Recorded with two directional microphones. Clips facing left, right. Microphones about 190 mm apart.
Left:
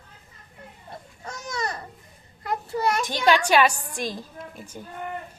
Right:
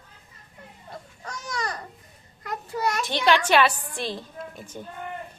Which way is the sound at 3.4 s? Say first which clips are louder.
Left 1 dB; 10° left (ahead or behind).